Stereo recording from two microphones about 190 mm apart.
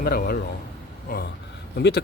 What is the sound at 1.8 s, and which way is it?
Speech, 60° left (ahead or behind).